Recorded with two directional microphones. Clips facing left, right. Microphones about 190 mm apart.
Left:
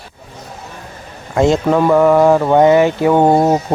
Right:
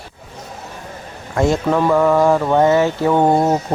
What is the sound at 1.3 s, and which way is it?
Speech, 20° left (ahead or behind).